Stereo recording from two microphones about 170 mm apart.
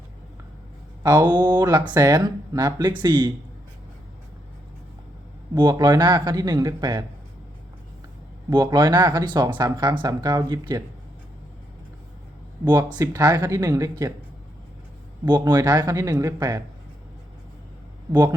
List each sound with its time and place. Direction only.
1.0 s speech: 25° right (ahead or behind)
5.5 s speech: 25° right (ahead or behind)
8.4 s speech: 25° right (ahead or behind)
13.0 s speech: 20° right (ahead or behind)
15.3 s speech: 25° right (ahead or behind)